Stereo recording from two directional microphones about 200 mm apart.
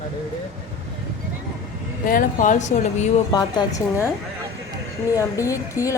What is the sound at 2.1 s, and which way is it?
Speech, 40° left (ahead or behind).